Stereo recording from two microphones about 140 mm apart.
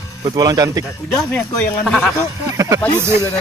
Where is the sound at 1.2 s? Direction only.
15° left (ahead or behind).